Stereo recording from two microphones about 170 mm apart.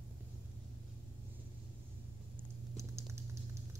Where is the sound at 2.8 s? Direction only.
15° right (ahead or behind).